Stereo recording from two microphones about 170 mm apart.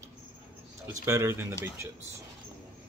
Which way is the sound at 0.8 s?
15° right (ahead or behind).